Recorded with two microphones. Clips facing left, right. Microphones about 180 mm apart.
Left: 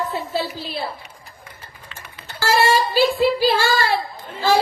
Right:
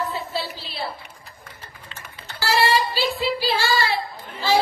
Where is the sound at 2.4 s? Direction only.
45° left (ahead or behind).